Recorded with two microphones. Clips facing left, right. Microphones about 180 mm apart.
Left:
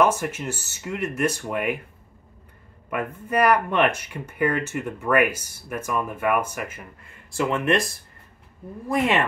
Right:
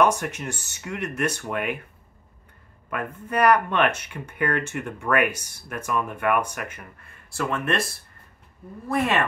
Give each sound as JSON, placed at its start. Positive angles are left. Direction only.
{"t": 0.0, "sound": "speech", "side_deg": 5}
{"t": 2.9, "sound": "speech", "side_deg": 10}
{"t": 7.5, "sound": "speech", "side_deg": 15}